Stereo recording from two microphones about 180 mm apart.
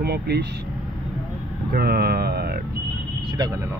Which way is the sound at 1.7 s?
65° right (ahead or behind).